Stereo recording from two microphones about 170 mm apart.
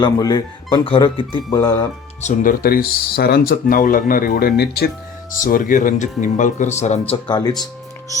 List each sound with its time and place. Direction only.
0.0 s speech: 25° left (ahead or behind)
2.2 s speech: 55° left (ahead or behind)
5.4 s speech: 55° left (ahead or behind)
7.1 s speech: 25° left (ahead or behind)